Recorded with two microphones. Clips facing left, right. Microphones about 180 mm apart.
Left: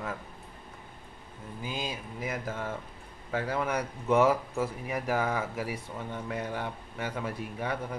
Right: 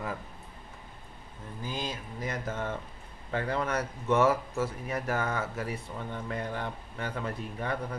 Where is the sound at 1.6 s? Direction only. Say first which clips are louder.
Even; 10° left (ahead or behind).